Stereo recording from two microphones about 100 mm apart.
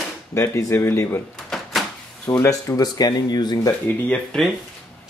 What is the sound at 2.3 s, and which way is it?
Speech, 35° left (ahead or behind).